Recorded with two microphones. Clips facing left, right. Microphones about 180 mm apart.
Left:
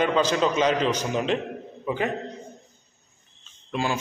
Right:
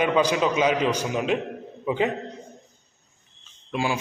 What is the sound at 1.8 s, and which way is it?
Speech, 20° right (ahead or behind).